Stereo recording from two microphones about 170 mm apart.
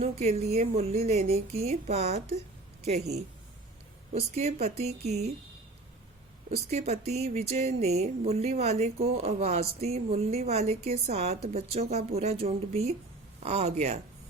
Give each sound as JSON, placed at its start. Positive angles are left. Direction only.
{"t": 0.0, "sound": "speech", "side_deg": -40}
{"t": 4.1, "sound": "speech", "side_deg": -40}
{"t": 6.5, "sound": "speech", "side_deg": -40}